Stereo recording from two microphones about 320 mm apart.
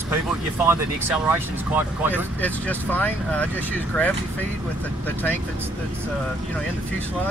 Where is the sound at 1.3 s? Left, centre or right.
Centre.